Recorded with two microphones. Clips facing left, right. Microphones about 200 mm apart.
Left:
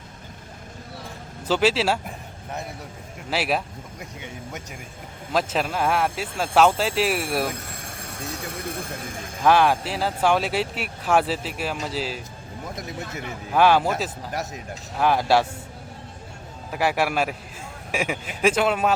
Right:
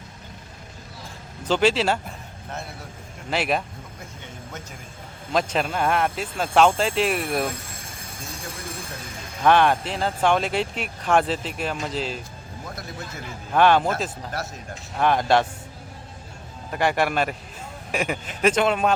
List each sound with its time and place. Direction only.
1.5 s speech: 5° left (ahead or behind)
3.2 s speech: 5° left (ahead or behind)
5.3 s speech: 5° left (ahead or behind)
7.9 s speech: 70° left (ahead or behind)
9.4 s speech: 5° left (ahead or behind)
13.5 s speech: 5° left (ahead or behind)
16.7 s speech: 5° left (ahead or behind)